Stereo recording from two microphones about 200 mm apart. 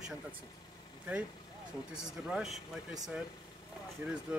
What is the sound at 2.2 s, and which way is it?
Speech, centre (ahead or behind).